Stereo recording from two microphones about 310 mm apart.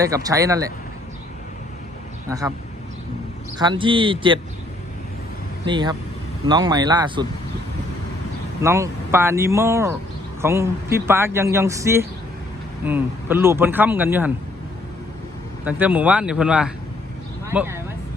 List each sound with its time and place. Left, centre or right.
0.0 s speech: centre
3.6 s speech: centre
5.6 s speech: centre
8.6 s speech: centre
15.6 s speech: centre
17.4 s a sound: centre